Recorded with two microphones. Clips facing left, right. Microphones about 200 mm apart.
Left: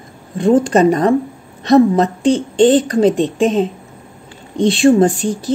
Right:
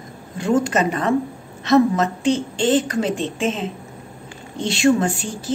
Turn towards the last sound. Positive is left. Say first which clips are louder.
# left 9 dB
turn(degrees=35)  # may be behind; listen again after turning